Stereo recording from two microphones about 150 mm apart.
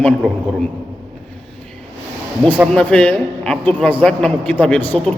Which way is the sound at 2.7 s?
5° left (ahead or behind).